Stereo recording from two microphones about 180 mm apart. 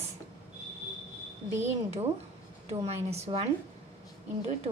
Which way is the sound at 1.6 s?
35° right (ahead or behind).